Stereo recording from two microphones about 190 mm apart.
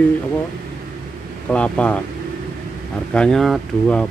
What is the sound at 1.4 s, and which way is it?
Speech, 5° left (ahead or behind).